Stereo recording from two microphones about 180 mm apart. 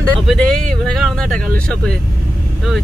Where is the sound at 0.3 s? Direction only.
5° left (ahead or behind).